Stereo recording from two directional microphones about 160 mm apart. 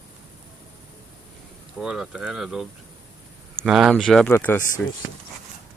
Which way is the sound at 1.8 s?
5° right (ahead or behind).